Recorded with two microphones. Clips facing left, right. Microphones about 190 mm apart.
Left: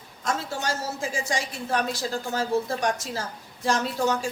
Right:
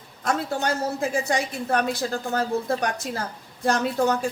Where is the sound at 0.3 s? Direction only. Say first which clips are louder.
Right 4 dB; 60° right (ahead or behind).